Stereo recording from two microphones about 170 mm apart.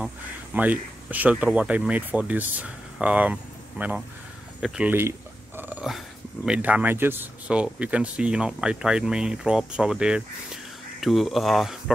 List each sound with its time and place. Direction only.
0.6 s speech: 10° right (ahead or behind)